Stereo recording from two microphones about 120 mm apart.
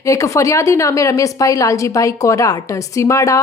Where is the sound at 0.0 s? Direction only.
25° left (ahead or behind).